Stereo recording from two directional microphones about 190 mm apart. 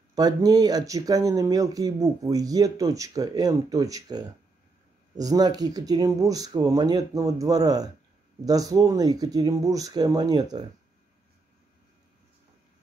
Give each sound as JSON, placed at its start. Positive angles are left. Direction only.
{"t": 0.1, "sound": "speech", "side_deg": -20}